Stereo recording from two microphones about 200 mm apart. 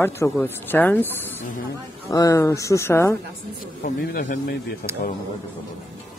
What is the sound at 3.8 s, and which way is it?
Speech, 45° left (ahead or behind).